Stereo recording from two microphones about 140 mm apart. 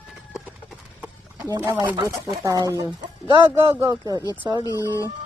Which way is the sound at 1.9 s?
25° right (ahead or behind).